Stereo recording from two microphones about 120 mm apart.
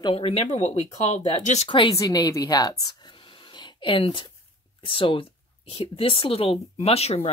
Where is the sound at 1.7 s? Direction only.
45° left (ahead or behind).